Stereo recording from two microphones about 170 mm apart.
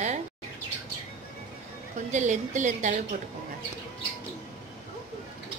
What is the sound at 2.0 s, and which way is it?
Speech, 45° right (ahead or behind).